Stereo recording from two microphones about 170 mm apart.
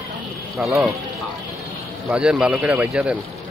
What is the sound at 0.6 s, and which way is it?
Speech, 5° right (ahead or behind).